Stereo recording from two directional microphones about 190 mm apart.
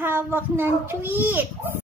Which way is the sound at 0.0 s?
10° right (ahead or behind).